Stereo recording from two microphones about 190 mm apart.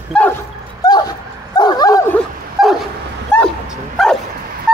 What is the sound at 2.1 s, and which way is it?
Dog, centre (ahead or behind).